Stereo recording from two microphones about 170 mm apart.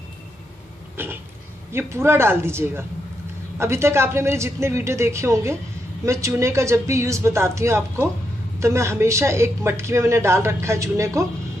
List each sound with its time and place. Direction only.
1.0 s a woman's voice: 10° right (ahead or behind)